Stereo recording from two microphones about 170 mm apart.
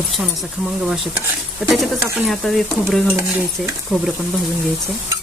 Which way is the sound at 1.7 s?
Centre (ahead or behind).